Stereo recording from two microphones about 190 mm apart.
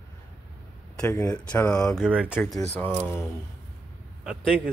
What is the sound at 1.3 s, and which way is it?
Speech, 5° left (ahead or behind).